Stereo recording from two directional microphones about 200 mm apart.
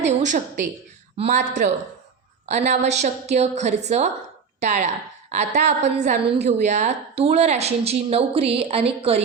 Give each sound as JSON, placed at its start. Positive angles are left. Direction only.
{"t": 0.0, "sound": "a woman's voice", "side_deg": -35}